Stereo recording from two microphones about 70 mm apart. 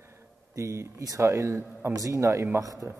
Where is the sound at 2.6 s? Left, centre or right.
Right.